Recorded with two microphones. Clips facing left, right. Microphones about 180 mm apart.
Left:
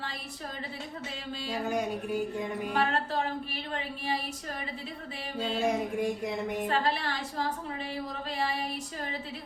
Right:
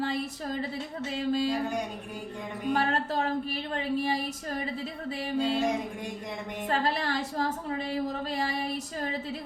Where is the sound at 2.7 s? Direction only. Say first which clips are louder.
Right 1 dB; 40° right (ahead or behind).